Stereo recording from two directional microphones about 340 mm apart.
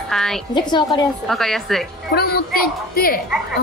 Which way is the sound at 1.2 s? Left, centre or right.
Centre.